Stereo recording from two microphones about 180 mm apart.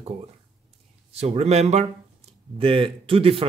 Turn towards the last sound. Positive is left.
turn(degrees=-30)  # may be behind; listen again after turning